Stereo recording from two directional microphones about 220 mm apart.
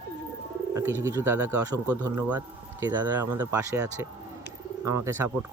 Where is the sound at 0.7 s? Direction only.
10° right (ahead or behind).